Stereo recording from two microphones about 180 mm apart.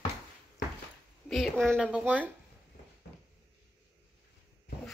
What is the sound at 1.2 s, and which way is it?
Speech, centre (ahead or behind).